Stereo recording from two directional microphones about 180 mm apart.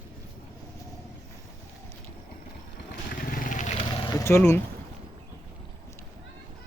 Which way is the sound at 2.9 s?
50° left (ahead or behind).